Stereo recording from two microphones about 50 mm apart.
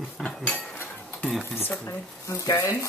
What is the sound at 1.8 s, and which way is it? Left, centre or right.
Speech, left.